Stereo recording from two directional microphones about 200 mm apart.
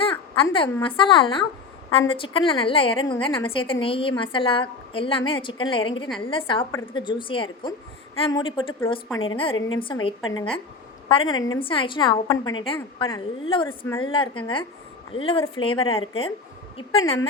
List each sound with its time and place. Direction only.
0.0 s a woman's voice: 25° left (ahead or behind)
6.7 s a woman's voice: 15° left (ahead or behind)
7.0 s a woman's voice: 25° left (ahead or behind)
13.7 s a woman's voice: 10° left (ahead or behind)
14.0 s a woman's voice: 25° left (ahead or behind)